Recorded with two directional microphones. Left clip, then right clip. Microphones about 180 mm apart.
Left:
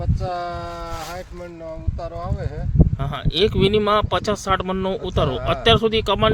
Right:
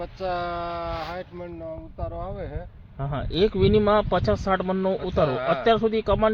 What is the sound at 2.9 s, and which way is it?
Speech, 30° left (ahead or behind).